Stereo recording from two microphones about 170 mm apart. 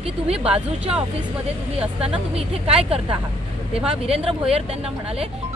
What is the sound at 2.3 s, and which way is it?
Speech, 35° right (ahead or behind).